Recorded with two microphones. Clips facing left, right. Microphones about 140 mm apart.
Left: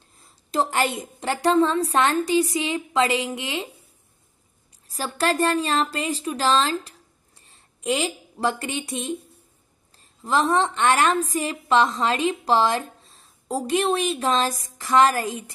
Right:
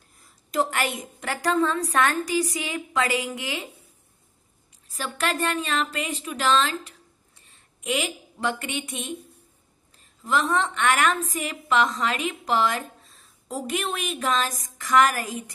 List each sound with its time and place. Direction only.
0.2 s a woman's voice: 30° left (ahead or behind)
4.9 s a woman's voice: 35° left (ahead or behind)
10.2 s a woman's voice: 35° left (ahead or behind)